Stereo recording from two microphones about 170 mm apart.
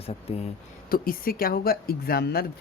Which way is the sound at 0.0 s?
35° left (ahead or behind).